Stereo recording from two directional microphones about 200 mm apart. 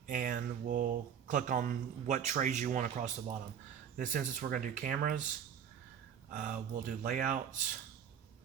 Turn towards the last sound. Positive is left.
turn(degrees=-40)  # may be behind; listen again after turning